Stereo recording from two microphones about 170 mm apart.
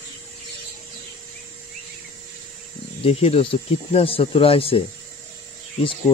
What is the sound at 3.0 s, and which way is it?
Speech, 35° left (ahead or behind).